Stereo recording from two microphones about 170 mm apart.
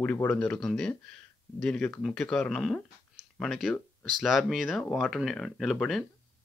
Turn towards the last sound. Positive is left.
turn(degrees=5)  # may be behind; listen again after turning